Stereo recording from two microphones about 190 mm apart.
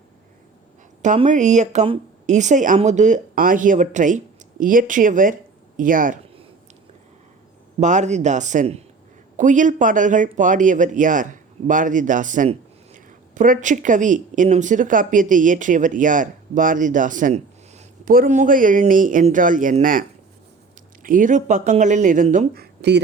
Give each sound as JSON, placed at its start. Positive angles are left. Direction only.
{"t": 1.0, "sound": "a woman's voice", "side_deg": -40}
{"t": 7.8, "sound": "speech", "side_deg": -40}